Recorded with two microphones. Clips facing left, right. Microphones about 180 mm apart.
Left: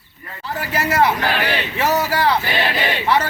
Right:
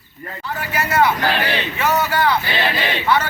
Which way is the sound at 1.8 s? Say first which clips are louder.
Even; 35° left (ahead or behind).